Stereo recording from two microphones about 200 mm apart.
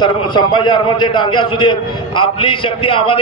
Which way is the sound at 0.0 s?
25° left (ahead or behind).